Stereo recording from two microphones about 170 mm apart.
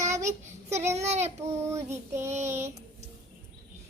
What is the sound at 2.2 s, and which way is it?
Child singing, 45° right (ahead or behind).